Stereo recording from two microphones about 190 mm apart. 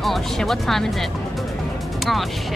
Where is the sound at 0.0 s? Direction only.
Centre (ahead or behind).